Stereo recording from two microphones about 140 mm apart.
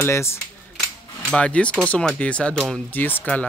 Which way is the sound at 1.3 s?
10° left (ahead or behind).